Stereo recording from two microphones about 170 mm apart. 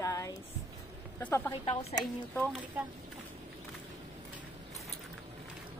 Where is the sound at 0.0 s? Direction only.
20° left (ahead or behind).